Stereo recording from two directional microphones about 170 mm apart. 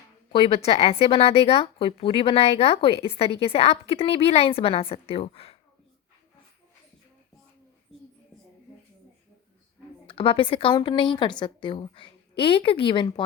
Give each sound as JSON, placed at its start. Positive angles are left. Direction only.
{"t": 0.3, "sound": "speech", "side_deg": 35}
{"t": 10.1, "sound": "a woman's voice", "side_deg": 30}